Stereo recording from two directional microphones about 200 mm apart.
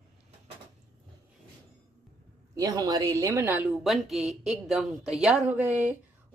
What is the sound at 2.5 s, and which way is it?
Speech, 20° right (ahead or behind).